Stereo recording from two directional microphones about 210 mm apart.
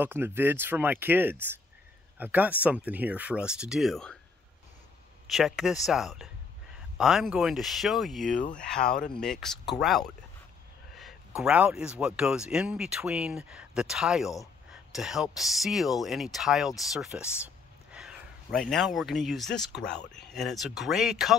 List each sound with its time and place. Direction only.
0.0 s speech: 10° right (ahead or behind)
5.2 s speech: centre (ahead or behind)